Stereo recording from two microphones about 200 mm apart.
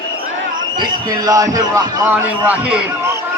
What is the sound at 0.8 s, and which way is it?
A man's voice, 20° right (ahead or behind).